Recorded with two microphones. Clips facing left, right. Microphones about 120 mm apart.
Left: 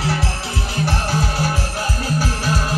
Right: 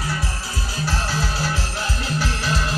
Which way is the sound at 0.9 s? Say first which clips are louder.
Left 2 dB; 50° left (ahead or behind).